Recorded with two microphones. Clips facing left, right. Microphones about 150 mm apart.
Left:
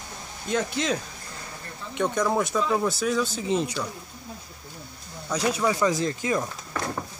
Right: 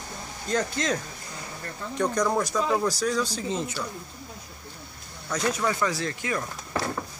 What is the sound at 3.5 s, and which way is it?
Speech, 15° left (ahead or behind).